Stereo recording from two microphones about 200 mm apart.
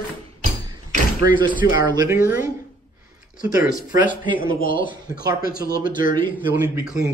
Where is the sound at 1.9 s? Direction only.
15° right (ahead or behind).